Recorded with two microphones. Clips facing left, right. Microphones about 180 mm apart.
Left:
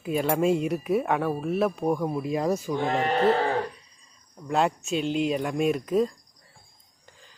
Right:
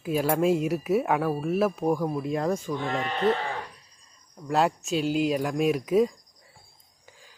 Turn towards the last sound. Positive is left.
turn(degrees=-5)  # may be behind; listen again after turning